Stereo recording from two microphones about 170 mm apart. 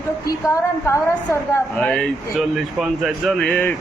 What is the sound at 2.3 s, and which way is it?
Speech, 5° right (ahead or behind).